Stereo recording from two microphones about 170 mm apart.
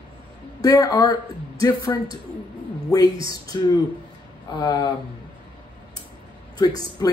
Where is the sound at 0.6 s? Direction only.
20° left (ahead or behind).